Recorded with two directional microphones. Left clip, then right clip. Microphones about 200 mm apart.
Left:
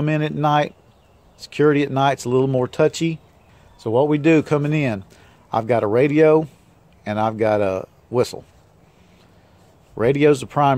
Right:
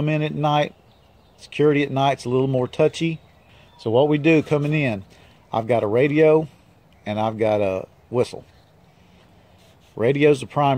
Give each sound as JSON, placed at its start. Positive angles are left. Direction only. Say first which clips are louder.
{"t": 0.0, "sound": "speech", "louder": "left 2 dB", "side_deg": 5}
{"t": 1.4, "sound": "speech", "louder": "left 2 dB", "side_deg": 45}
{"t": 1.7, "sound": "speech", "louder": "left 2 dB", "side_deg": 5}
{"t": 3.8, "sound": "speech", "louder": "even", "side_deg": -5}
{"t": 9.9, "sound": "speech", "louder": "left 1 dB", "side_deg": 5}